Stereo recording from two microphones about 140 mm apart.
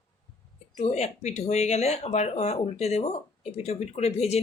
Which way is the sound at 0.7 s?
50° left (ahead or behind).